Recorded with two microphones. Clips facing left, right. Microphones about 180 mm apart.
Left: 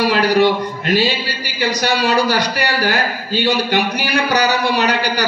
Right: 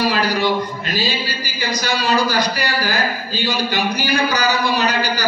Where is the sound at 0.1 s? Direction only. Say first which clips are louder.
Left 6 dB; 60° left (ahead or behind).